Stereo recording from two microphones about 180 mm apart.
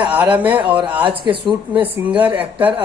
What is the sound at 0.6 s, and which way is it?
Speech, 25° right (ahead or behind).